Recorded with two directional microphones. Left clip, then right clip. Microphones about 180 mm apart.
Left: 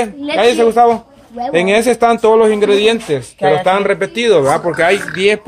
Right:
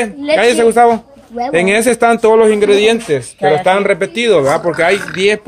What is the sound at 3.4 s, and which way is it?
Speech, 30° left (ahead or behind).